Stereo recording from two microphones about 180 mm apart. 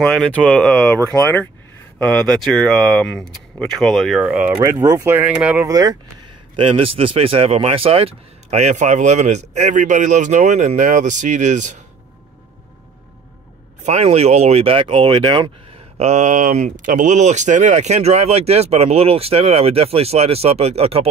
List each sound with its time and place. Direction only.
0.0 s speech: 5° left (ahead or behind)
4.6 s speech: 20° right (ahead or behind)
5.7 s speech: 20° right (ahead or behind)
6.5 s speech: 30° right (ahead or behind)
13.8 s speech: 35° right (ahead or behind)
16.0 s speech: 40° right (ahead or behind)